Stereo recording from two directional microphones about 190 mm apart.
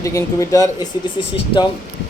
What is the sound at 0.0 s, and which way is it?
Speech, 15° left (ahead or behind).